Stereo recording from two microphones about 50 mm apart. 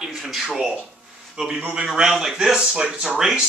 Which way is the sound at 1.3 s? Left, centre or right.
Centre.